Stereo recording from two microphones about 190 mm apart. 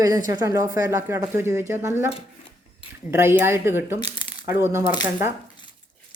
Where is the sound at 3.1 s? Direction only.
15° right (ahead or behind).